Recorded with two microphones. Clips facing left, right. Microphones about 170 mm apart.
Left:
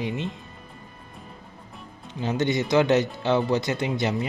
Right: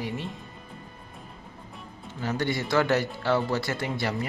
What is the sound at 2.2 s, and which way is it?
A man's voice, 20° left (ahead or behind).